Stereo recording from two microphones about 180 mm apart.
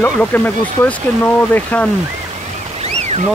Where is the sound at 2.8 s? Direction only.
35° right (ahead or behind).